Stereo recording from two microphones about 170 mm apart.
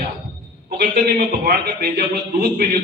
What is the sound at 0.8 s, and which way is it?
A man's voice, 60° right (ahead or behind).